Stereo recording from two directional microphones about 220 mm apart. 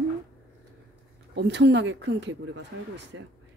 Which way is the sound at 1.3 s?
50° right (ahead or behind).